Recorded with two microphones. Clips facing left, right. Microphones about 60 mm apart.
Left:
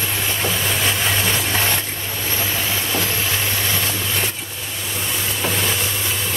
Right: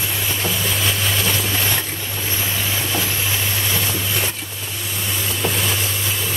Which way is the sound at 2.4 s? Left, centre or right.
Centre.